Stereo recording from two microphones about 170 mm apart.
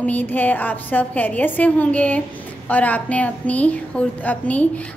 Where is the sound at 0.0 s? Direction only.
10° left (ahead or behind).